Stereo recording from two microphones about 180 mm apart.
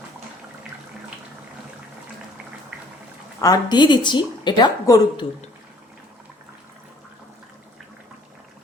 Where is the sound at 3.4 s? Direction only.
20° left (ahead or behind).